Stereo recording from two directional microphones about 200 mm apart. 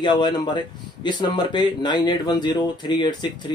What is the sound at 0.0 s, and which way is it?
Speech, 25° left (ahead or behind).